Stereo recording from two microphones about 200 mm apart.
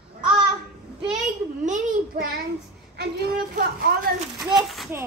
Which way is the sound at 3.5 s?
45° right (ahead or behind).